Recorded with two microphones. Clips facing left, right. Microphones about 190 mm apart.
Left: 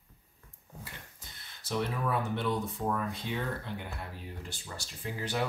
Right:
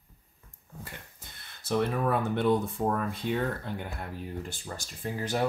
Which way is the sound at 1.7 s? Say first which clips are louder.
Right 5 dB; 55° right (ahead or behind).